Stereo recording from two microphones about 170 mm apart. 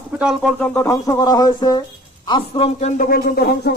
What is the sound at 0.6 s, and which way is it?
A man's voice, 10° left (ahead or behind).